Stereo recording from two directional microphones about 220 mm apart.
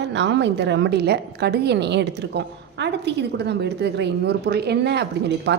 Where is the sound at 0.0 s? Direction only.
55° right (ahead or behind).